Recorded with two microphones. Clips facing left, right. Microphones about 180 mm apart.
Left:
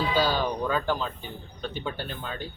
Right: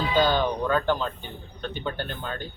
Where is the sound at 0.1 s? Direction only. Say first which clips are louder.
Right 7 dB; 5° left (ahead or behind).